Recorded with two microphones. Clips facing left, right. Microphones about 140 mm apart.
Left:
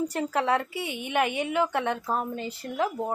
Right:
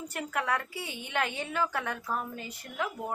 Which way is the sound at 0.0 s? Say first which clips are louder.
Left 7 dB; 30° left (ahead or behind).